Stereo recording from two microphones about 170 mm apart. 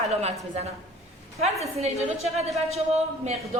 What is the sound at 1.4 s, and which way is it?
Speech, 40° right (ahead or behind).